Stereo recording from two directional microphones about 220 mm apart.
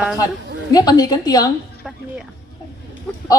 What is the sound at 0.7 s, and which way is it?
Speech, 15° left (ahead or behind).